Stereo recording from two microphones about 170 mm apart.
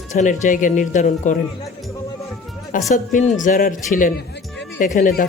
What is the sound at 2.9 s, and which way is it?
Speech, 45° left (ahead or behind).